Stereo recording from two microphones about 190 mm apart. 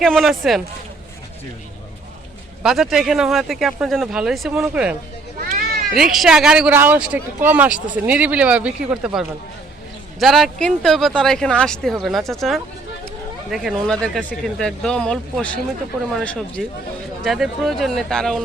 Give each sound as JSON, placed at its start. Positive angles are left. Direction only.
{"t": 0.0, "sound": "speech", "side_deg": 0}
{"t": 2.6, "sound": "speech", "side_deg": 0}
{"t": 5.5, "sound": "cat", "side_deg": -50}
{"t": 5.9, "sound": "speech", "side_deg": 0}